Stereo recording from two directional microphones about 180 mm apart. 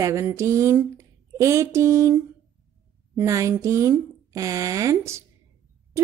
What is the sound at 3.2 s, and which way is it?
A woman's voice, 15° right (ahead or behind).